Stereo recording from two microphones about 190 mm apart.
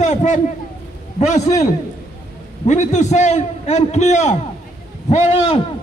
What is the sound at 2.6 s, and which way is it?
A man's voice, 40° left (ahead or behind).